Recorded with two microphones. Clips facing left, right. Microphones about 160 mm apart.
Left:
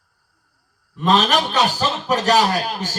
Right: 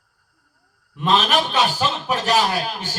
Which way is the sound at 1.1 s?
40° left (ahead or behind).